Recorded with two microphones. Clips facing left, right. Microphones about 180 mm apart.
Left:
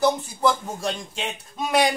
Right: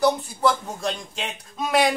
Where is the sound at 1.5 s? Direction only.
Centre (ahead or behind).